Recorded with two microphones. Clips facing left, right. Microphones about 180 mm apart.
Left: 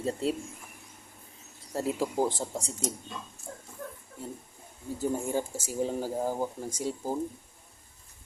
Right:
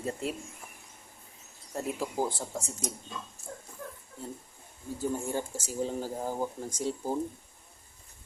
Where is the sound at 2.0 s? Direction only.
Centre (ahead or behind).